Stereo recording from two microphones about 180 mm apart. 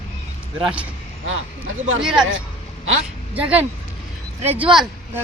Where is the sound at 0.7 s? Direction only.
5° right (ahead or behind).